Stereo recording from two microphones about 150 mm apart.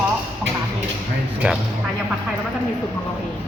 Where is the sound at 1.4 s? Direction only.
10° right (ahead or behind).